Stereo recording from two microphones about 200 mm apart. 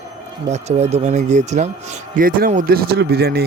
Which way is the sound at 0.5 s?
30° right (ahead or behind).